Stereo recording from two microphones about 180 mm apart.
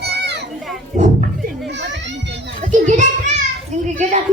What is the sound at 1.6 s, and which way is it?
Children playing, 75° right (ahead or behind).